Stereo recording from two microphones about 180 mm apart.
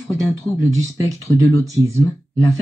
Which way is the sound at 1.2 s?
20° right (ahead or behind).